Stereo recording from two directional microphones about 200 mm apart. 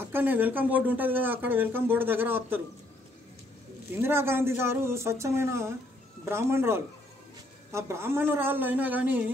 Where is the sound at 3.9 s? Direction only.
10° right (ahead or behind).